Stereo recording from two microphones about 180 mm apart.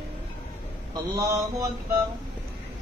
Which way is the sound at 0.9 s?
20° right (ahead or behind).